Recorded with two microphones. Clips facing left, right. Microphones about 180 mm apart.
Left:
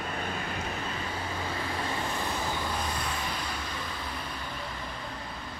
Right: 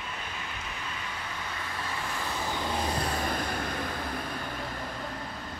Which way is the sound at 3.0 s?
40° right (ahead or behind).